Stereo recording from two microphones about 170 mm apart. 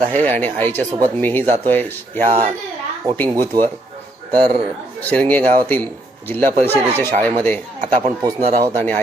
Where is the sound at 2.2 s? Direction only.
40° right (ahead or behind).